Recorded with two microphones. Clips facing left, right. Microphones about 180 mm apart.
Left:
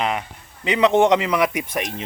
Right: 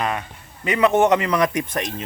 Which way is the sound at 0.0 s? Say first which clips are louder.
Left 1 dB; 15° left (ahead or behind).